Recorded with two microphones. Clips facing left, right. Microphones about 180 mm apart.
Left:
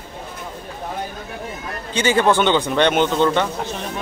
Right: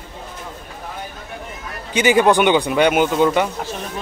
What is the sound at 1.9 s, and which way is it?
Speech, 15° right (ahead or behind).